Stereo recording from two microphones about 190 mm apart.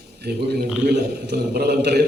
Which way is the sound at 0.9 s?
60° right (ahead or behind).